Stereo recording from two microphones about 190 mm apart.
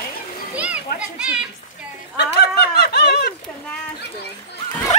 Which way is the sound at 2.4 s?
55° left (ahead or behind).